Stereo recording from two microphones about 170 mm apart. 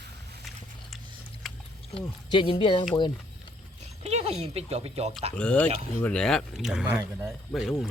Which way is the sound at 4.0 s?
40° right (ahead or behind).